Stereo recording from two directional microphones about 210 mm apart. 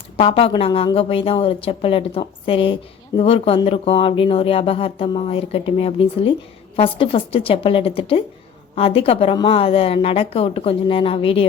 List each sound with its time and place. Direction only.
0.2 s speech: 25° left (ahead or behind)